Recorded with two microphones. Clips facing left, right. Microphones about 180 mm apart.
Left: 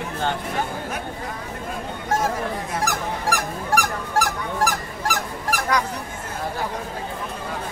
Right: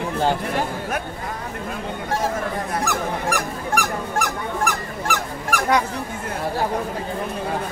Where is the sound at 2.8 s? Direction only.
35° left (ahead or behind).